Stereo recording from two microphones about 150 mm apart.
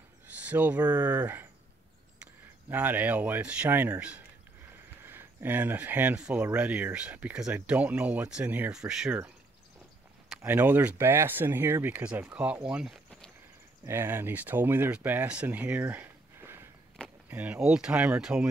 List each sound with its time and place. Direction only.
0.4 s speech: 10° right (ahead or behind)
2.7 s speech: 10° right (ahead or behind)
10.4 s speech: 10° right (ahead or behind)
13.8 s speech: 15° right (ahead or behind)